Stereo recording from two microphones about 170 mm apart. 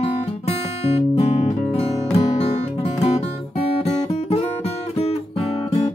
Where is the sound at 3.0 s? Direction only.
40° left (ahead or behind).